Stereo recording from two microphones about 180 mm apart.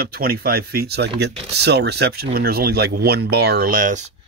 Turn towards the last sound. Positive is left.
turn(degrees=-50)  # may be behind; listen again after turning